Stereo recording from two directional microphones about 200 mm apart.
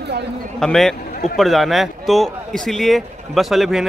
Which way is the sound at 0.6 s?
Centre (ahead or behind).